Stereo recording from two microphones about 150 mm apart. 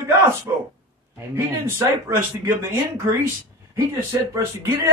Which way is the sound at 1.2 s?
15° right (ahead or behind).